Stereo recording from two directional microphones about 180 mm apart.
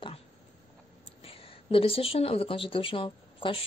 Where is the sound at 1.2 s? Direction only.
30° left (ahead or behind).